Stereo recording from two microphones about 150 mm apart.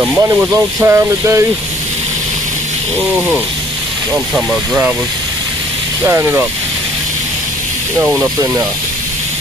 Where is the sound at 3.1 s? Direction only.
10° right (ahead or behind).